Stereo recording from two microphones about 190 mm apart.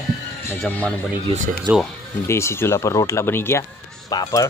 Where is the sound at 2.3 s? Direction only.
15° left (ahead or behind).